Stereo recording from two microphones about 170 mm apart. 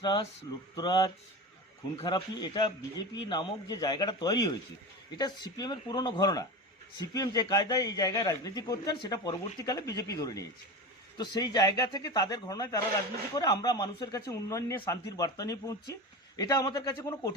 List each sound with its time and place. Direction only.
0.0 s a man's voice: 25° left (ahead or behind)